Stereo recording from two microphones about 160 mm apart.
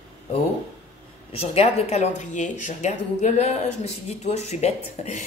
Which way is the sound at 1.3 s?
40° left (ahead or behind).